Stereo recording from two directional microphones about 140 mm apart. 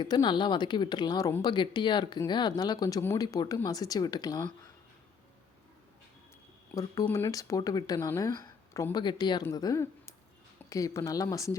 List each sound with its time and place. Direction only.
0.0 s speech: 35° left (ahead or behind)
6.7 s speech: 20° left (ahead or behind)